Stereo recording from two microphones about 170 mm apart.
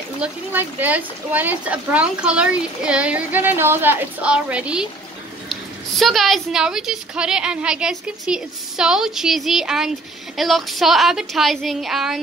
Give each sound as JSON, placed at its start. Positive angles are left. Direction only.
{"t": 0.2, "sound": "a woman's voice", "side_deg": -10}